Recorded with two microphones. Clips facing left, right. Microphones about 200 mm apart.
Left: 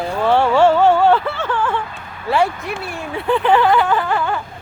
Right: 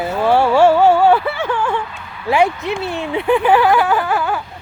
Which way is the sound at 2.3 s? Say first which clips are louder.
Right 3 dB; 15° right (ahead or behind).